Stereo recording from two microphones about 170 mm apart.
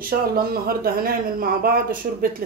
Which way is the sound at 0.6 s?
60° right (ahead or behind).